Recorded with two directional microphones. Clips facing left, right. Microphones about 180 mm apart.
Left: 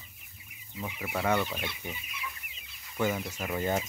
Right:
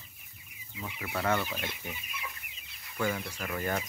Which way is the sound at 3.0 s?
20° left (ahead or behind).